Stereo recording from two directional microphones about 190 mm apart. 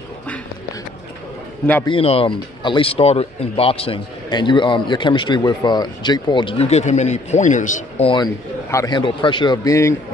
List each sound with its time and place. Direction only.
1.9 s speech: 30° left (ahead or behind)
8.6 s speech: 20° left (ahead or behind)